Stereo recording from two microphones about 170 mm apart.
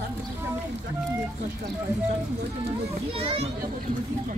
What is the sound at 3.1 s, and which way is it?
Speech, 35° right (ahead or behind).